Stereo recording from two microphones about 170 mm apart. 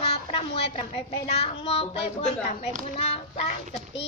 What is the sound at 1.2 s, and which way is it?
A child's voice, 35° left (ahead or behind).